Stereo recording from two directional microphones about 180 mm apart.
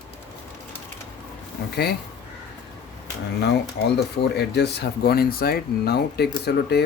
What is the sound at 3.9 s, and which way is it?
Speech, 70° left (ahead or behind).